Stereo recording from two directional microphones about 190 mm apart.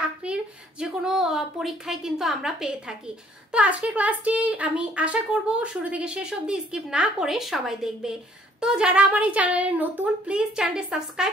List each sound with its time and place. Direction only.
0.2 s a woman's voice: 5° right (ahead or behind)